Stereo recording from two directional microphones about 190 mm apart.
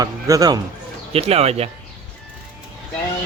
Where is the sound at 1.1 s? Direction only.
30° right (ahead or behind).